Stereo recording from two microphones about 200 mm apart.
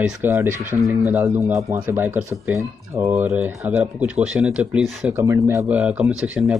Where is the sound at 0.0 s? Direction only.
5° right (ahead or behind).